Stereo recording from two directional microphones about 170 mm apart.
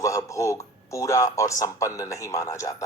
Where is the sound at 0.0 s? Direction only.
20° left (ahead or behind).